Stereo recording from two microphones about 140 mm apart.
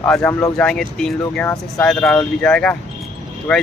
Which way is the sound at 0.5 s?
5° left (ahead or behind).